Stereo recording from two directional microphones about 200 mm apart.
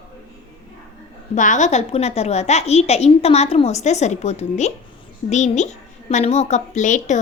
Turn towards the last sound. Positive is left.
turn(degrees=35)  # may be behind; listen again after turning